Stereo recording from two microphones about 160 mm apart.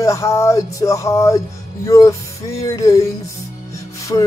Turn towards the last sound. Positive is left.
turn(degrees=25)  # may be behind; listen again after turning